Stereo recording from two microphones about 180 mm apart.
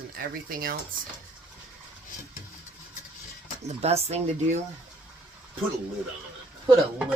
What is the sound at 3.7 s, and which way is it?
Speech, 35° right (ahead or behind).